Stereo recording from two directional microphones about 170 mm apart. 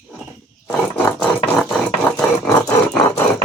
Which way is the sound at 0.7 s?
10° left (ahead or behind).